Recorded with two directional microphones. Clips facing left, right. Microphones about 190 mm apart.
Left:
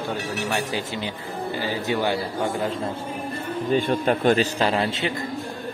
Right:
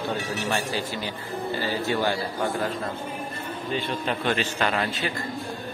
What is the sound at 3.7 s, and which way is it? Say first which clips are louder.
A man's voice: left 7 dB; 50° left (ahead or behind).